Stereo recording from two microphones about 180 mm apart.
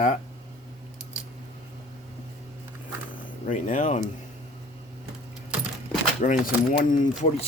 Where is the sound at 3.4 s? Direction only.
45° left (ahead or behind).